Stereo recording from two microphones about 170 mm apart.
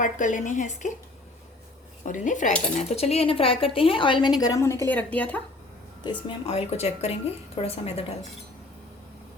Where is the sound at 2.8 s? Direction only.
35° left (ahead or behind).